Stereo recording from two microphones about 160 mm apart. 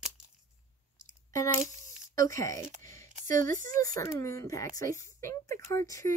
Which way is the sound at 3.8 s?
20° left (ahead or behind).